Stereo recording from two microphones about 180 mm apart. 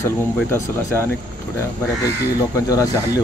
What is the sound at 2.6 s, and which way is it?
Speech, 15° left (ahead or behind).